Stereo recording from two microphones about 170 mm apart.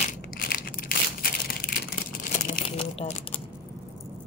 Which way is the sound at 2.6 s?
35° left (ahead or behind).